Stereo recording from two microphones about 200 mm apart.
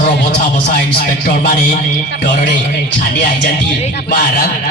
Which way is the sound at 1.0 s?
45° left (ahead or behind).